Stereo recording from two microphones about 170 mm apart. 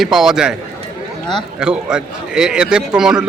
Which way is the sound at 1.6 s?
5° right (ahead or behind).